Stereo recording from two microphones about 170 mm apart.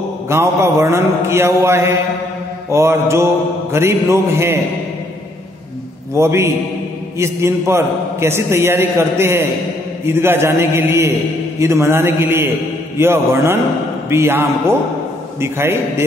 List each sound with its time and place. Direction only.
0.3 s a man's voice: 15° right (ahead or behind)
6.1 s a man's voice: 15° right (ahead or behind)